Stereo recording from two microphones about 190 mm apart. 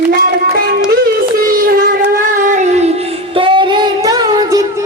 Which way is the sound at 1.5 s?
50° right (ahead or behind).